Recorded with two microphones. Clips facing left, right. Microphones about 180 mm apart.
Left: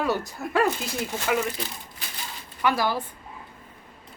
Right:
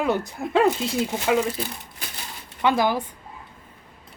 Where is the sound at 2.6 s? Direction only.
20° right (ahead or behind).